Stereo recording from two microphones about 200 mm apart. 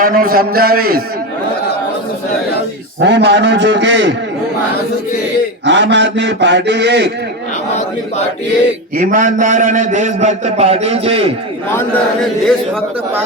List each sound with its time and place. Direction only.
0.0 s a man's voice: 45° right (ahead or behind)
3.0 s a man's voice: 60° right (ahead or behind)
5.6 s a man's voice: 65° right (ahead or behind)
9.0 s a man's voice: 40° right (ahead or behind)
11.7 s a man's voice: 10° left (ahead or behind)